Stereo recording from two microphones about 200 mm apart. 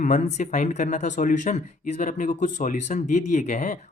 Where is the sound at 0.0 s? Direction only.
40° left (ahead or behind).